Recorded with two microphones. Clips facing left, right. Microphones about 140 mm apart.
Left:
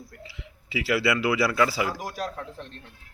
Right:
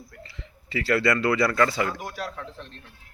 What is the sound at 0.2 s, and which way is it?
Speech, 5° left (ahead or behind).